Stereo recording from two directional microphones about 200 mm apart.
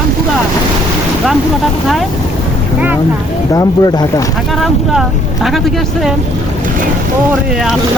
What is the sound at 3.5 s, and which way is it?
Speech, 20° left (ahead or behind).